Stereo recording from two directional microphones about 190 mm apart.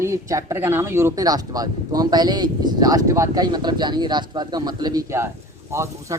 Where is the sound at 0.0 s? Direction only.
15° right (ahead or behind).